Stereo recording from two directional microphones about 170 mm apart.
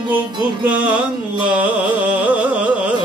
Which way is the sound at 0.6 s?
10° right (ahead or behind).